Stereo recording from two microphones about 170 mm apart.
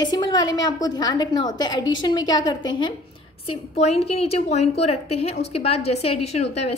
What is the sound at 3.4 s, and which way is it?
A woman's voice, 40° left (ahead or behind).